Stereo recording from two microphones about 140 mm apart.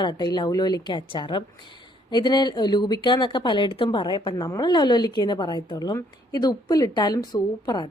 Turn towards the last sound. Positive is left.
turn(degrees=30)  # may be behind; listen again after turning